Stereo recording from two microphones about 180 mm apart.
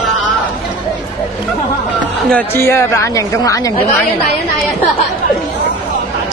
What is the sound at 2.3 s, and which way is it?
A woman's voice, 10° left (ahead or behind).